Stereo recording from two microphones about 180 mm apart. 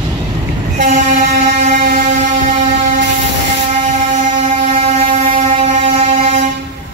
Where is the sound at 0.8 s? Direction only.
45° right (ahead or behind).